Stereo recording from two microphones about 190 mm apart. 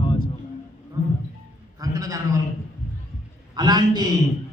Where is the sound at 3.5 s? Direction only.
20° right (ahead or behind).